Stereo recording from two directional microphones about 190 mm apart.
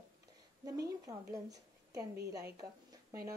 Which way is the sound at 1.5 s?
20° right (ahead or behind).